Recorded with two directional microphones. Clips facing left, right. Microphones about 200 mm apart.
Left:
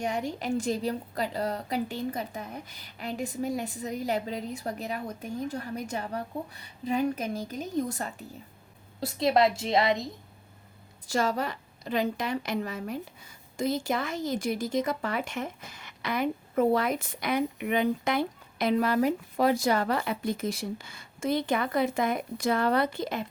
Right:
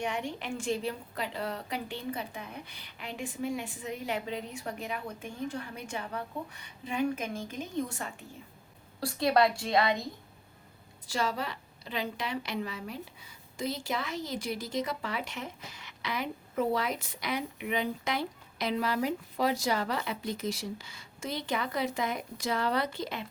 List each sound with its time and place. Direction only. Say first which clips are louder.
0.0 s a woman's voice: left 4 dB; 40° left (ahead or behind)
9.0 s a woman's voice: left 2 dB; 20° left (ahead or behind)
11.0 s a woman's voice: left 5 dB; 45° left (ahead or behind)